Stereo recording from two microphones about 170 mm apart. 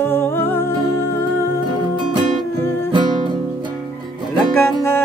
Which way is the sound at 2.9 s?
25° right (ahead or behind).